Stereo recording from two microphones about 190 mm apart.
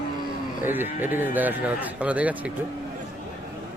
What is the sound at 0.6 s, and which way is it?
Cattle, 10° right (ahead or behind).